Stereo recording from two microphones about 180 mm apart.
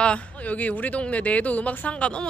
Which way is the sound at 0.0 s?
5° left (ahead or behind).